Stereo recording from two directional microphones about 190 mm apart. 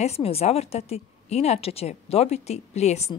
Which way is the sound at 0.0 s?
30° left (ahead or behind).